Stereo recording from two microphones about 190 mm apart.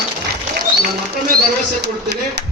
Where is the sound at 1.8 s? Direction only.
60° right (ahead or behind).